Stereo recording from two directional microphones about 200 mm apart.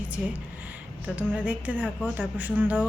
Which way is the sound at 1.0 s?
5° right (ahead or behind).